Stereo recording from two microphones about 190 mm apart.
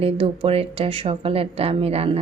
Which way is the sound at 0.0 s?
30° right (ahead or behind).